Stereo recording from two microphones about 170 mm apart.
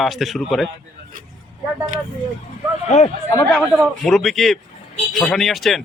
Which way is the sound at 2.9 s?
45° left (ahead or behind).